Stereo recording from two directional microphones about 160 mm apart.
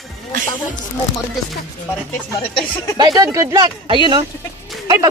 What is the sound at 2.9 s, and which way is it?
Speech, 25° right (ahead or behind).